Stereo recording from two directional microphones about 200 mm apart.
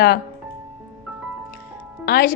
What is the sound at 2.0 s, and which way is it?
Speech, 50° left (ahead or behind).